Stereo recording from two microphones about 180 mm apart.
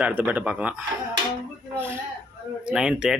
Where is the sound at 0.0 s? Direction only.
10° right (ahead or behind).